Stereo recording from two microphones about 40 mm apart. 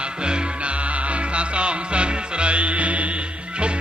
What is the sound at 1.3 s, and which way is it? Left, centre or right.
Music, right.